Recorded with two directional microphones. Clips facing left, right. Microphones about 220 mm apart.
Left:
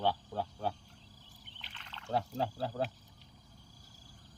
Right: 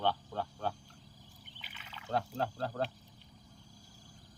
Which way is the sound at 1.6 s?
5° right (ahead or behind).